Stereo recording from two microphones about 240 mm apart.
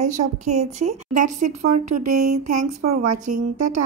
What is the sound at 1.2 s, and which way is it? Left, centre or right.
Speech, right.